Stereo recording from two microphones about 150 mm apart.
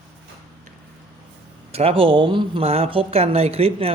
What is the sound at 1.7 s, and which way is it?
Speech, 40° right (ahead or behind).